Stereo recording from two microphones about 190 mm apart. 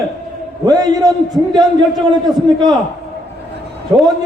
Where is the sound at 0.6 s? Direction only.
20° right (ahead or behind).